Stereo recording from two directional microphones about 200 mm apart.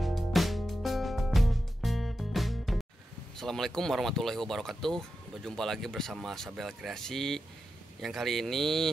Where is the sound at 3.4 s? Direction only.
Centre (ahead or behind).